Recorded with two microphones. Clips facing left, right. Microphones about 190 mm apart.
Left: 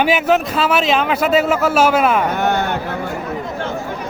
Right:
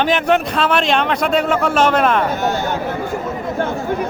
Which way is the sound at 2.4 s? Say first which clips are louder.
Left 1 dB; 60° left (ahead or behind).